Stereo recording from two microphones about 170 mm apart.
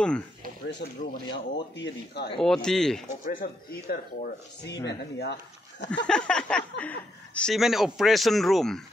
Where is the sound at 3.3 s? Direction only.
60° left (ahead or behind).